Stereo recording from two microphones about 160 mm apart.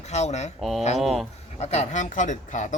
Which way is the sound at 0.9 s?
Centre (ahead or behind).